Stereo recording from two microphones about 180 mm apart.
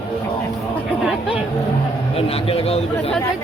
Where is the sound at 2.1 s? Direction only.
30° left (ahead or behind).